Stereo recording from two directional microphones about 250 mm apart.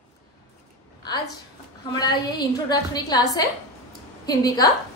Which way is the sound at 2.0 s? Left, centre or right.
Centre.